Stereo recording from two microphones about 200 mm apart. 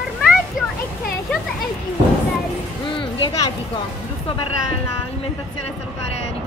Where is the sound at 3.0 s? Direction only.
25° left (ahead or behind).